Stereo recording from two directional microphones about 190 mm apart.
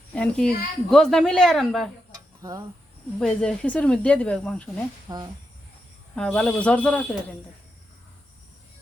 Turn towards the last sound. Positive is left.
turn(degrees=5)  # may be behind; listen again after turning